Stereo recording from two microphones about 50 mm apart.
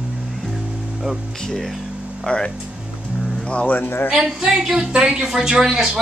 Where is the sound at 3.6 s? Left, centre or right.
Left.